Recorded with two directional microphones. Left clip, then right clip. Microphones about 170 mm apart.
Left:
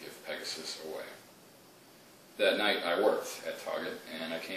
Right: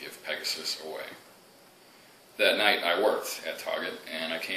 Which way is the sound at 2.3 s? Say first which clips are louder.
Right 5 dB; 15° left (ahead or behind).